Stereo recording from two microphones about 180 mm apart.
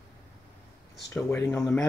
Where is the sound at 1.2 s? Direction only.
15° left (ahead or behind).